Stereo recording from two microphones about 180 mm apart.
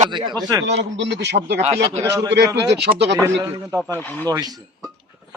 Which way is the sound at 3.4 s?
15° right (ahead or behind).